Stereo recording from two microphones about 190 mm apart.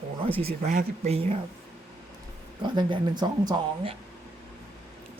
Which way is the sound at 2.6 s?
25° right (ahead or behind).